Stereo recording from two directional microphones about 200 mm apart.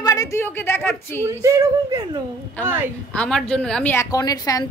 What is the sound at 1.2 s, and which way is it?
Speech, 15° right (ahead or behind).